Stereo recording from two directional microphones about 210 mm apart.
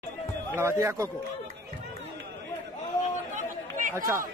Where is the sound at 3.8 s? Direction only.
35° right (ahead or behind).